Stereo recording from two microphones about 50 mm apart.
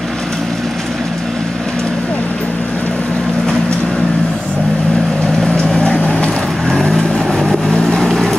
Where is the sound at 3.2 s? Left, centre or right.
Centre.